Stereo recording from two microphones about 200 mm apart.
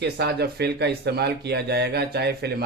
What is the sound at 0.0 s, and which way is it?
Speech, 55° right (ahead or behind).